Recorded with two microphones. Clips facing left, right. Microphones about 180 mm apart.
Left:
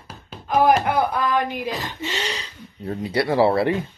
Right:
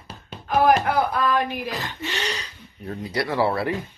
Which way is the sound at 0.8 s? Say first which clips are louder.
Left 1 dB; 15° left (ahead or behind).